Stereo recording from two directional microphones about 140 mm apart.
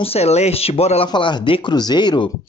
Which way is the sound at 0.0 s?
45° left (ahead or behind).